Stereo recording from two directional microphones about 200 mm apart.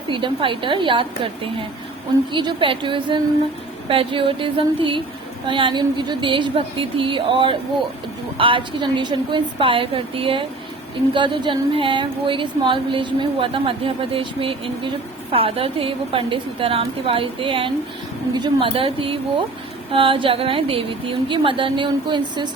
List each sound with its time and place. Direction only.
0.1 s speech: 25° right (ahead or behind)